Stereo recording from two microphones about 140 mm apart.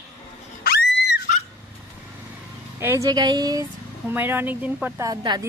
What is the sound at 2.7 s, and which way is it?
Speech, 20° right (ahead or behind).